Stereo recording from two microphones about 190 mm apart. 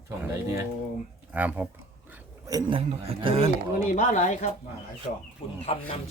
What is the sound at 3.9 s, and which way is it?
Speech, 40° left (ahead or behind).